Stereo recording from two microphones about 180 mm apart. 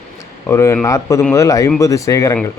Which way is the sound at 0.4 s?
15° left (ahead or behind).